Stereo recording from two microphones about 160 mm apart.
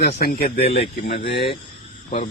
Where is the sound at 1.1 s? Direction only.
90° left.